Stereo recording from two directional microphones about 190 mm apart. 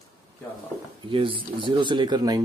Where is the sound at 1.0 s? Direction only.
25° right (ahead or behind).